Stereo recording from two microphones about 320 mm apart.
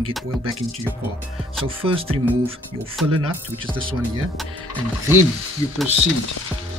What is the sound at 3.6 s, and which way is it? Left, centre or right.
Speech, centre.